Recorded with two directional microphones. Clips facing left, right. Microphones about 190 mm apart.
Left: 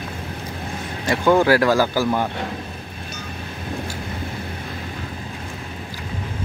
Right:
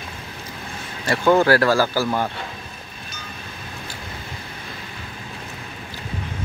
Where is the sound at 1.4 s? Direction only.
15° left (ahead or behind).